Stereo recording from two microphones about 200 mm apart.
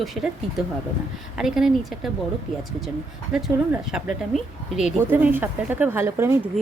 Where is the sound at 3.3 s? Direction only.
5° right (ahead or behind).